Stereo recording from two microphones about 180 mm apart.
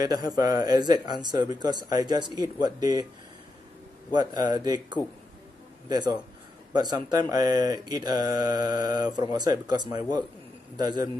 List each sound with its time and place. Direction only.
0.4 s speech: 20° right (ahead or behind)
4.1 s speech: 25° right (ahead or behind)